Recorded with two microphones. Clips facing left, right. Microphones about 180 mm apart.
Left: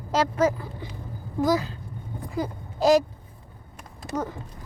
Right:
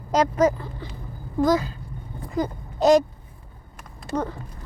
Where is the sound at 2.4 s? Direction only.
5° left (ahead or behind).